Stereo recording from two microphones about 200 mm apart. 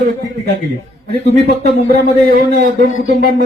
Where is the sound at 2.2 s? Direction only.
45° right (ahead or behind).